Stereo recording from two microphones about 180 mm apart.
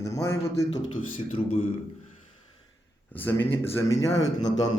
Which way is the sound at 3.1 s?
10° left (ahead or behind).